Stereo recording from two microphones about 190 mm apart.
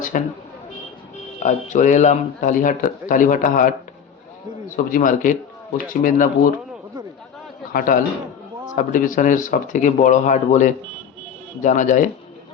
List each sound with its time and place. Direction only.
0.1 s speech: 45° left (ahead or behind)
1.4 s speech: 40° left (ahead or behind)
4.9 s speech: 45° left (ahead or behind)
7.7 s a man's voice: 50° left (ahead or behind)